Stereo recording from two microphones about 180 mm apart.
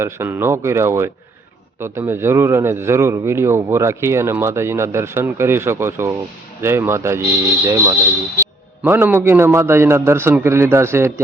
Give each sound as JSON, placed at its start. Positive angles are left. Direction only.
{"t": 0.0, "sound": "a man's voice", "side_deg": -15}